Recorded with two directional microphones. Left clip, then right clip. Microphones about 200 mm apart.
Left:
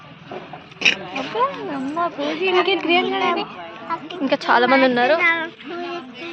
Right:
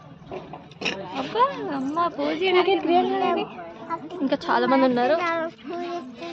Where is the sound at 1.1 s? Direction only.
5° left (ahead or behind).